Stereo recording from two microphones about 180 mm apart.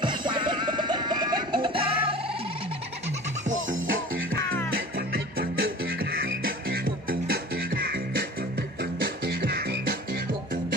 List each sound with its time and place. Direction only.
0.0 s music: 25° right (ahead or behind)
4.7 s music: 55° right (ahead or behind); by 6.3 s 85° right
6.4 s music: 55° right (ahead or behind)
9.0 s music: 60° right (ahead or behind)